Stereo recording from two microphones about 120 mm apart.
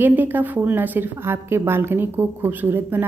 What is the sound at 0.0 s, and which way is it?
Speech, 15° right (ahead or behind).